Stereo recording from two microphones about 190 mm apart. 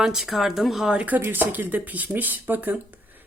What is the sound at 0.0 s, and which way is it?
Speech, centre (ahead or behind).